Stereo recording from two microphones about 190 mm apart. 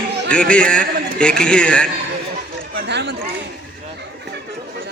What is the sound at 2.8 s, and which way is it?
Speech, 65° right (ahead or behind).